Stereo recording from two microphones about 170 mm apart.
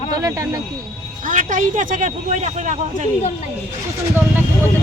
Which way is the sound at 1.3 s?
50° right (ahead or behind).